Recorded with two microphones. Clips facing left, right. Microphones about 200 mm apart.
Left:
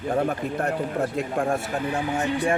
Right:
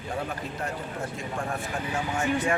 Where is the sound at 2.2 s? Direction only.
35° left (ahead or behind).